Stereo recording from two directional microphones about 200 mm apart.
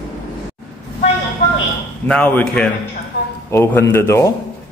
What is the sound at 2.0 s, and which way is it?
A man's voice, 10° left (ahead or behind).